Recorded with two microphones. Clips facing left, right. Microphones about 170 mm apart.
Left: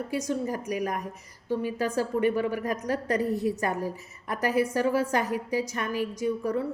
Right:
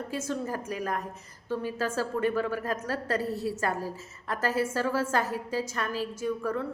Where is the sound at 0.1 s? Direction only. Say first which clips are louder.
Left 3 dB; 15° left (ahead or behind).